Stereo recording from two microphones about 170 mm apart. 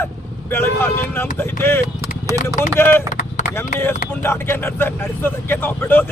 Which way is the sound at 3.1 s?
50° left (ahead or behind).